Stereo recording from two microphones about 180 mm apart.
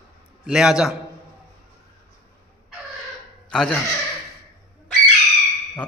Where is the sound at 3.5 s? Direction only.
5° left (ahead or behind).